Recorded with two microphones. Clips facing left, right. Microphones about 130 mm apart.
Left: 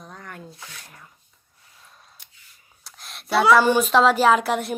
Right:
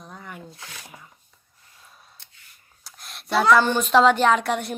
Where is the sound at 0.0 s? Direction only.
5° right (ahead or behind).